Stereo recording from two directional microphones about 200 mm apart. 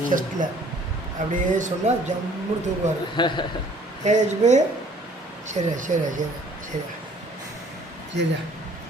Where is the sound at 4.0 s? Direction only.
35° right (ahead or behind).